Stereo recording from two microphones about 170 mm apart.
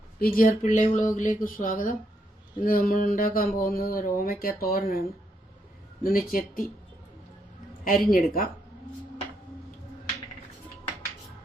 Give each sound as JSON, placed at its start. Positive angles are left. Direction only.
{"t": 0.2, "sound": "speech", "side_deg": 55}
{"t": 6.0, "sound": "speech", "side_deg": 60}
{"t": 7.9, "sound": "speech", "side_deg": 55}